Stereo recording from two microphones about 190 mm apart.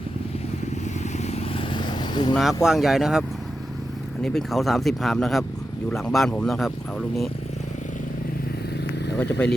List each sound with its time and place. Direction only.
1.1 s vehicle: 35° left (ahead or behind)
2.3 s speech: centre (ahead or behind)
9.4 s speech: 5° left (ahead or behind)